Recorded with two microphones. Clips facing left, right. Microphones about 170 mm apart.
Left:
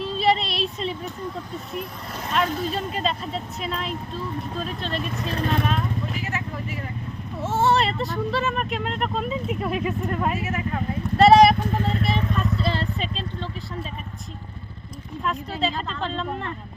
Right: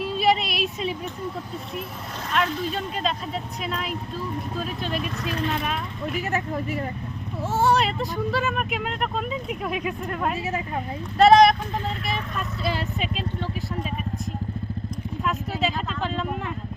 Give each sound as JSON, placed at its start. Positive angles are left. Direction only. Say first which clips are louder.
{"t": 0.0, "sound": "a sound", "louder": "even", "side_deg": -10}
{"t": 2.3, "sound": "speech", "louder": "left 1 dB", "side_deg": 0}
{"t": 7.4, "sound": "speech", "louder": "even", "side_deg": 0}
{"t": 10.4, "sound": "speech", "louder": "left 1 dB", "side_deg": -25}
{"t": 11.2, "sound": "speech", "louder": "left 1 dB", "side_deg": 5}
{"t": 12.0, "sound": "vehicle", "louder": "left 5 dB", "side_deg": 0}
{"t": 15.2, "sound": "vehicle", "louder": "even", "side_deg": -5}